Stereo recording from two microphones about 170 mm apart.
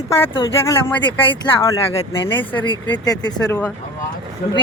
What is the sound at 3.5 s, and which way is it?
Speech, 10° left (ahead or behind).